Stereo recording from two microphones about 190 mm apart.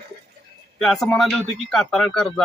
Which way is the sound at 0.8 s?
Centre (ahead or behind).